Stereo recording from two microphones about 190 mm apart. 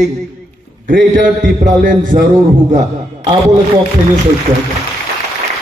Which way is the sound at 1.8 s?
40° right (ahead or behind).